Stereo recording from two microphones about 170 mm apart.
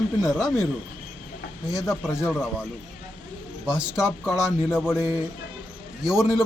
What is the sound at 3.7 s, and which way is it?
Speech, 5° right (ahead or behind).